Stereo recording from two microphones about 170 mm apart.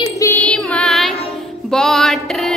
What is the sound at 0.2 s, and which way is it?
Music, 10° left (ahead or behind).